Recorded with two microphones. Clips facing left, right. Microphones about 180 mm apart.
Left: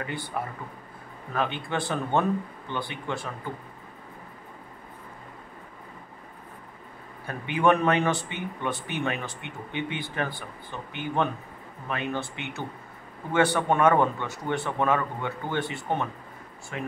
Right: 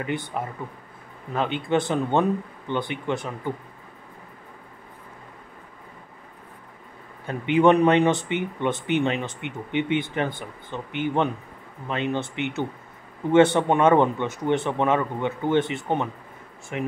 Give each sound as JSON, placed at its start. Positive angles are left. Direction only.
{"t": 0.0, "sound": "speech", "side_deg": -20}
{"t": 7.2, "sound": "speech", "side_deg": -20}